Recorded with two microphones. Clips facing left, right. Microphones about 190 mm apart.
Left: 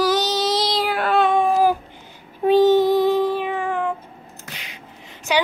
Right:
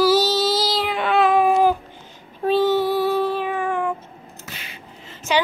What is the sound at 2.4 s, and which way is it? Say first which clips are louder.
Child singing: left 4 dB; 15° left (ahead or behind).